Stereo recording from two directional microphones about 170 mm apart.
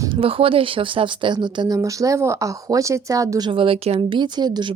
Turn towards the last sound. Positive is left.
turn(degrees=-25)  # may be behind; listen again after turning